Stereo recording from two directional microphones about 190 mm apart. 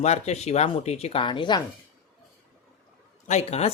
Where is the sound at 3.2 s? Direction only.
35° left (ahead or behind).